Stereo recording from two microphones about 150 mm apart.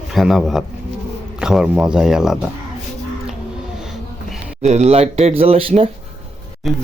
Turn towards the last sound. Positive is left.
turn(degrees=0)  # may be behind; listen again after turning